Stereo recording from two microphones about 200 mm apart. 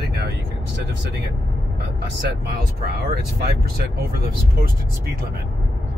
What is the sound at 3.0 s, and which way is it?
Speech, 50° right (ahead or behind).